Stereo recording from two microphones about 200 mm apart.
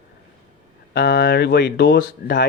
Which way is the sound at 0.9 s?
60° left (ahead or behind).